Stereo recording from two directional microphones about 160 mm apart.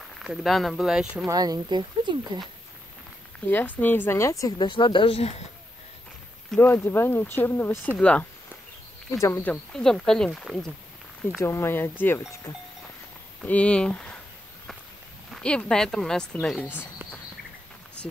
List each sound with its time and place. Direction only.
0.2 s speech: centre (ahead or behind)
1.3 s speech: 25° right (ahead or behind)
3.3 s speech: 10° left (ahead or behind); by 5.3 s 35° left (ahead or behind)
6.5 s speech: 10° left (ahead or behind)
11.4 s speech: 15° left (ahead or behind)
13.4 s speech: 10° left (ahead or behind)
15.3 s speech: 5° left (ahead or behind)